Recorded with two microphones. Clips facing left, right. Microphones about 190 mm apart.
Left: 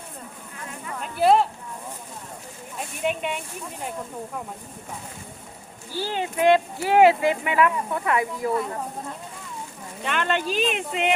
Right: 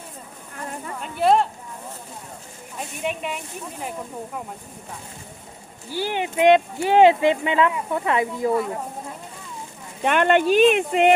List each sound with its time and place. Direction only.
0.9 s speech: centre (ahead or behind)
2.7 s speech: centre (ahead or behind)
5.9 s speech: 15° right (ahead or behind)
10.0 s speech: 55° right (ahead or behind)